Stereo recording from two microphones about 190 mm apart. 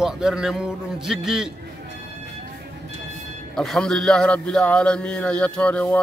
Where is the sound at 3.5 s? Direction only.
Centre (ahead or behind).